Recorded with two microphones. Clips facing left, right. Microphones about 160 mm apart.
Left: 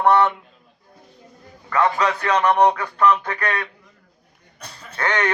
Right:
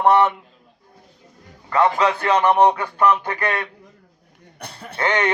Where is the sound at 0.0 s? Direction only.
25° right (ahead or behind).